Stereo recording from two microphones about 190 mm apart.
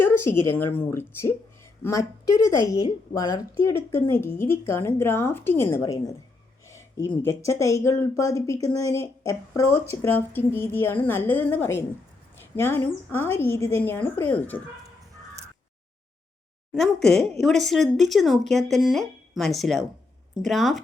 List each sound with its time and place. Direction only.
0.0 s a woman's voice: 10° left (ahead or behind)
16.7 s speech: centre (ahead or behind)